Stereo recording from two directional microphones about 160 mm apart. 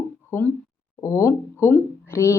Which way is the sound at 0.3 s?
15° left (ahead or behind).